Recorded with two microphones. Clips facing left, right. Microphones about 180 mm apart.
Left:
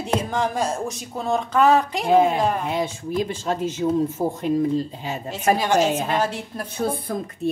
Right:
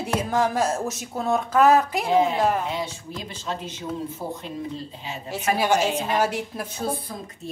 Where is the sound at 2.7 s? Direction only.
50° left (ahead or behind).